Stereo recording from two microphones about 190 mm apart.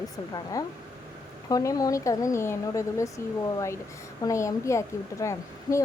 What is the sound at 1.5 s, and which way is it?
A woman's voice, 20° left (ahead or behind).